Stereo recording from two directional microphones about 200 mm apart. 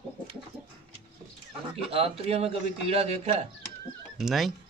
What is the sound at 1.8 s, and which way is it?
A man's voice, 30° right (ahead or behind).